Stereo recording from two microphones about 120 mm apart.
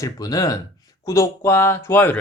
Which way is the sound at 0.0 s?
30° left (ahead or behind).